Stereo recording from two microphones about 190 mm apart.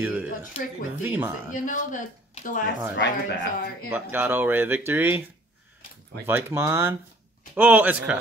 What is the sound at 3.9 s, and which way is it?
Speech, 10° right (ahead or behind).